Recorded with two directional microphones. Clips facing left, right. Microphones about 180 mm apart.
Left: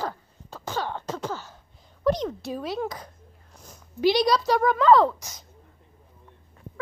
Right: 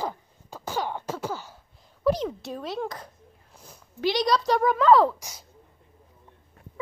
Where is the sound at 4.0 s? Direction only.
10° left (ahead or behind); by 5.4 s 10° right (ahead or behind).